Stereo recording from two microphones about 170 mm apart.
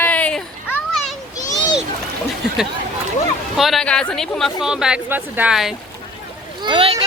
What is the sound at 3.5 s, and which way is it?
Speech, centre (ahead or behind).